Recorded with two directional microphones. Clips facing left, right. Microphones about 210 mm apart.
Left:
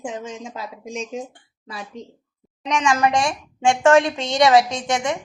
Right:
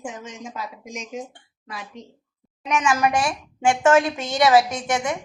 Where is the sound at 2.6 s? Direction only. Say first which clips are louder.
Left 1 dB; 5° right (ahead or behind).